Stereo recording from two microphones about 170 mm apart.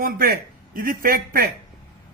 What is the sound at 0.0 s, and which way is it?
Speech, 60° right (ahead or behind).